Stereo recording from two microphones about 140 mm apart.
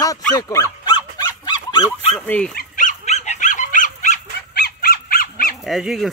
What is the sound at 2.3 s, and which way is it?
Speech, 10° left (ahead or behind).